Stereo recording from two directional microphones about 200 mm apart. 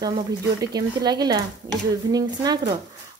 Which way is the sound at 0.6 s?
20° right (ahead or behind).